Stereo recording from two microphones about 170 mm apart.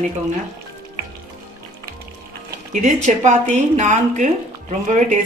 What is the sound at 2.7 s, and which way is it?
A woman's voice, 45° right (ahead or behind).